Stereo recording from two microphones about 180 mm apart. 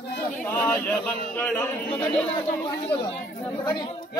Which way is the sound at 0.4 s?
15° left (ahead or behind).